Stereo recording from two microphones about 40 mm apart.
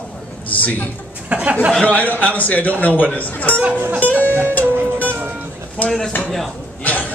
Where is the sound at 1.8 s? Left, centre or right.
Left.